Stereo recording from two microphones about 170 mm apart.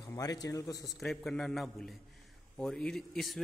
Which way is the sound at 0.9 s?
Centre (ahead or behind).